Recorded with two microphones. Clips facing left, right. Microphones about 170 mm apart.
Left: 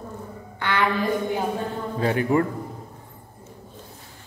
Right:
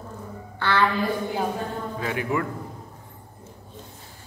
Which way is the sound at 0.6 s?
15° left (ahead or behind).